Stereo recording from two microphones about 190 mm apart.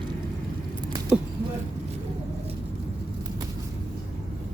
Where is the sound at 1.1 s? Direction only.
5° right (ahead or behind).